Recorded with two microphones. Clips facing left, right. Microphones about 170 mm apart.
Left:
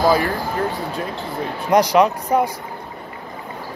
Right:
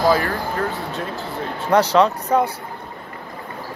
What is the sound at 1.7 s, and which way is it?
Speech, 15° left (ahead or behind).